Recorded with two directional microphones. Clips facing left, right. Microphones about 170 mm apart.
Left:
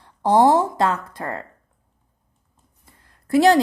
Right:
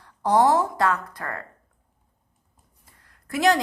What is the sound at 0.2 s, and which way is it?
Speech, 25° left (ahead or behind).